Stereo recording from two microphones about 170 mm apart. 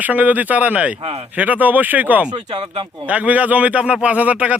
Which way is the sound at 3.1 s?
10° right (ahead or behind).